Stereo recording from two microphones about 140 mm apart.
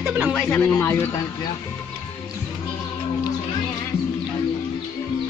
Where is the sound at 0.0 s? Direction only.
5° right (ahead or behind).